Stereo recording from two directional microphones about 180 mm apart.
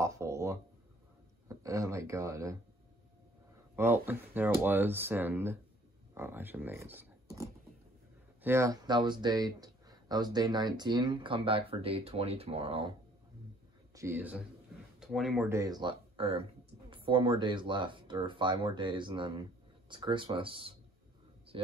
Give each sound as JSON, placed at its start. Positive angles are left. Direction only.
{"t": 0.0, "sound": "a sound", "side_deg": -15}
{"t": 1.5, "sound": "speech", "side_deg": -15}
{"t": 3.7, "sound": "speech", "side_deg": -10}
{"t": 13.9, "sound": "a man's voice", "side_deg": -15}
{"t": 15.4, "sound": "speech", "side_deg": -15}